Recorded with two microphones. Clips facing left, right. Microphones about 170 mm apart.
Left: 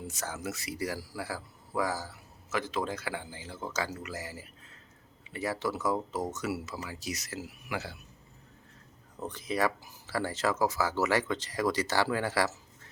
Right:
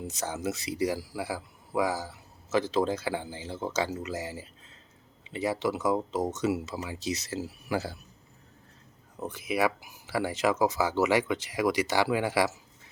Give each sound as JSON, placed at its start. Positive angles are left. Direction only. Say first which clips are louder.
{"t": 0.0, "sound": "speech", "louder": "right 5 dB", "side_deg": -20}
{"t": 2.5, "sound": "speech", "louder": "right 6 dB", "side_deg": -30}
{"t": 9.2, "sound": "speech", "louder": "right 2 dB", "side_deg": -10}